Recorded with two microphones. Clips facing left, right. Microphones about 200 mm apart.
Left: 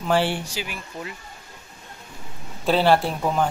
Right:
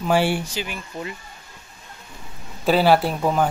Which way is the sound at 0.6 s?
5° left (ahead or behind).